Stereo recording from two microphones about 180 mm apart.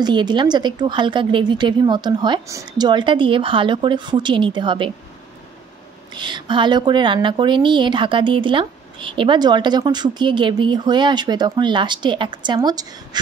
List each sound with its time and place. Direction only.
0.0 s speech: 25° right (ahead or behind)
6.1 s speech: 25° right (ahead or behind)